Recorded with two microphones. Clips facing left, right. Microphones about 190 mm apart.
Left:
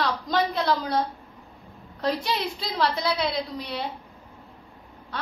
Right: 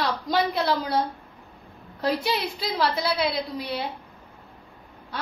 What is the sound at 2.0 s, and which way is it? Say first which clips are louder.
A woman's voice: right 1 dB; 5° right (ahead or behind).